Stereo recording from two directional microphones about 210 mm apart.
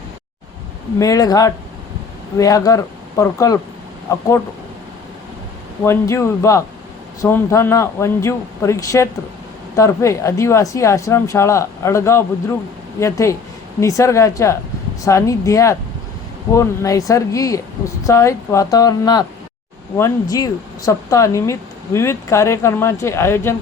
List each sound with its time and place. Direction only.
0.9 s speech: 15° left (ahead or behind)
5.8 s speech: 10° left (ahead or behind)